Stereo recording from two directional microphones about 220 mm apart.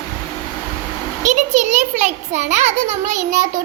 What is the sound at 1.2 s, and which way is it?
A child's voice, 35° right (ahead or behind).